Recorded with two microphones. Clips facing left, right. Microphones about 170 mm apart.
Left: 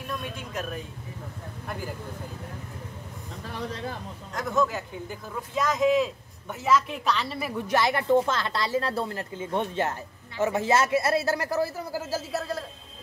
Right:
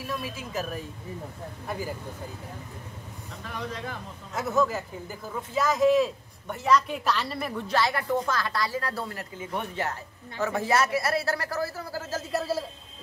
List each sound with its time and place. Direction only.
0.0 s speech: 5° right (ahead or behind)
3.4 s speech: 30° left (ahead or behind)
4.3 s speech: 5° right (ahead or behind)
7.7 s speech: 20° left (ahead or behind); by 12.6 s 5° right (ahead or behind)